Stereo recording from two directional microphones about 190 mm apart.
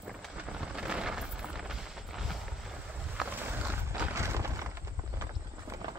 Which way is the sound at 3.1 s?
5° right (ahead or behind).